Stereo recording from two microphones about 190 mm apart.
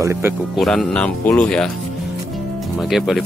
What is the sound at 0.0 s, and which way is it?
Speech, 15° right (ahead or behind).